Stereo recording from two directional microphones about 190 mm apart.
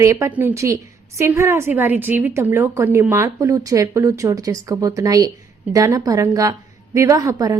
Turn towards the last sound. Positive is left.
turn(degrees=-20)  # may be behind; listen again after turning